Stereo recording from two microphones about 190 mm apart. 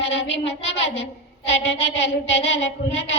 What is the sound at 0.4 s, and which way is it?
Child singing, 70° left (ahead or behind).